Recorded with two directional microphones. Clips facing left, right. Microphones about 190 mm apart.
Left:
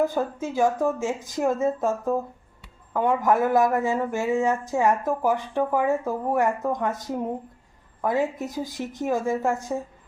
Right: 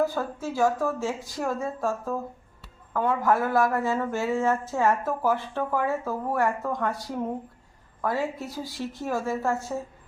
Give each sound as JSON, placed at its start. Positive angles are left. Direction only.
{"t": 0.0, "sound": "speech", "side_deg": 20}